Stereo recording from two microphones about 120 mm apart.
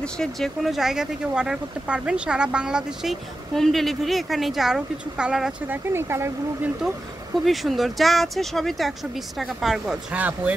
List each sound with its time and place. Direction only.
0.0 s speech: 5° left (ahead or behind)
5.7 s speech: 20° right (ahead or behind)
7.4 s speech: centre (ahead or behind)
10.1 s speech: 15° right (ahead or behind)